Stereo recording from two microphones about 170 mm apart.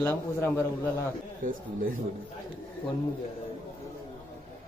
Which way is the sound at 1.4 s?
55° right (ahead or behind).